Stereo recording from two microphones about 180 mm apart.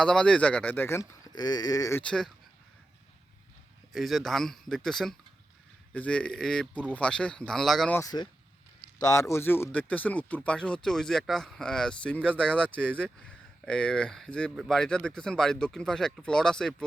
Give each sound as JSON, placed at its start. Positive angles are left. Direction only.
{"t": 0.0, "sound": "speech", "side_deg": 5}
{"t": 2.0, "sound": "speech", "side_deg": 5}
{"t": 3.9, "sound": "speech", "side_deg": 0}
{"t": 7.9, "sound": "speech", "side_deg": 20}